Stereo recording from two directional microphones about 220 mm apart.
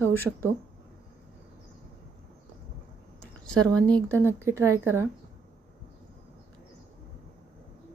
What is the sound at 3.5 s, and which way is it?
Speech, 5° left (ahead or behind).